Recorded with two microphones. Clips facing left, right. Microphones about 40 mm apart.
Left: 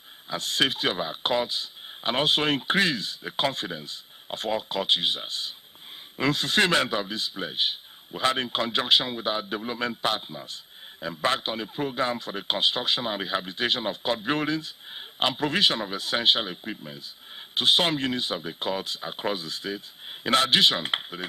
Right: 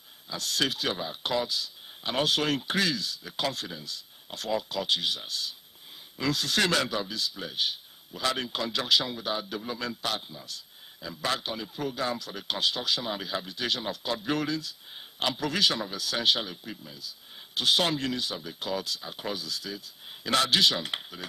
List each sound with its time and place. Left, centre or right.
0.3 s speech: left